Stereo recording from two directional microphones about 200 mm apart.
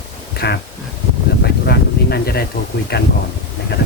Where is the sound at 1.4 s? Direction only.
55° left (ahead or behind).